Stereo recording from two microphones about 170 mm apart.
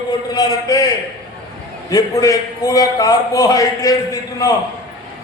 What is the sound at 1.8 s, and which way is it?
A man's voice, 20° left (ahead or behind).